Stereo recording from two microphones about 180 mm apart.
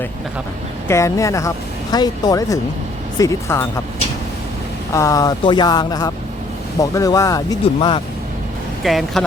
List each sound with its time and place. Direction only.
0.9 s speech: 15° left (ahead or behind)
4.9 s speech: 20° left (ahead or behind)
8.8 s speech: centre (ahead or behind)